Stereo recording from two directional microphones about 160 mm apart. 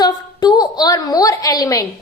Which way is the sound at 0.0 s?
25° left (ahead or behind).